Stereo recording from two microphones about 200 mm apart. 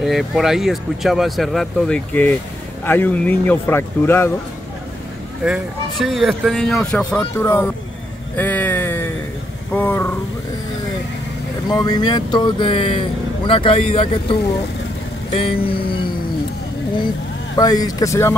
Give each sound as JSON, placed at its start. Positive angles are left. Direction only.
{"t": 0.0, "sound": "speech", "side_deg": 0}
{"t": 5.4, "sound": "speech", "side_deg": 0}
{"t": 8.4, "sound": "a sound", "side_deg": 10}
{"t": 9.7, "sound": "speech", "side_deg": 10}
{"t": 11.7, "sound": "speech", "side_deg": 20}
{"t": 17.6, "sound": "speech", "side_deg": 20}